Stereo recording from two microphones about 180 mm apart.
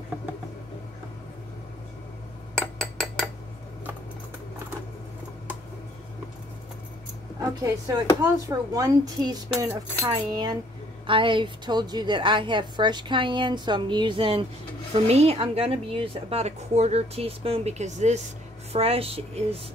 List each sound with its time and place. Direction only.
2.5 s cutlery: 5° left (ahead or behind)
7.4 s a woman's voice: 20° right (ahead or behind); by 19.4 s 35° right (ahead or behind)